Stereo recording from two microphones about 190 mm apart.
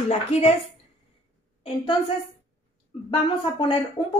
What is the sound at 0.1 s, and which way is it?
Speech, 35° left (ahead or behind).